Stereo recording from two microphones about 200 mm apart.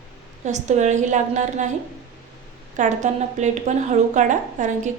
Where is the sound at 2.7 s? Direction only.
35° right (ahead or behind).